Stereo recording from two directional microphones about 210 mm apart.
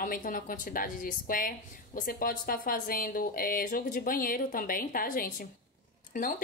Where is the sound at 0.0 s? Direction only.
40° left (ahead or behind).